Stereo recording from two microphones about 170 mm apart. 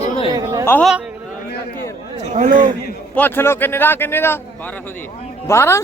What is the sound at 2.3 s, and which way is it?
Speech, 50° right (ahead or behind).